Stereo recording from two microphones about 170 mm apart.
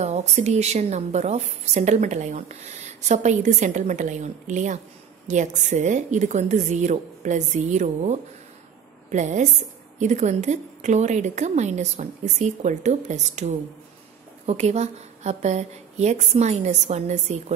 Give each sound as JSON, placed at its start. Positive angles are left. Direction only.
{"t": 0.0, "sound": "a woman's voice", "side_deg": -40}